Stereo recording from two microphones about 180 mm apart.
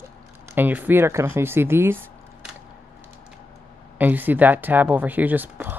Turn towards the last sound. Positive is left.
turn(degrees=-10)  # may be behind; listen again after turning